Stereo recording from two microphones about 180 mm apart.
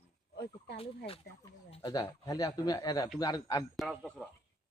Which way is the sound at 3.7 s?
5° left (ahead or behind).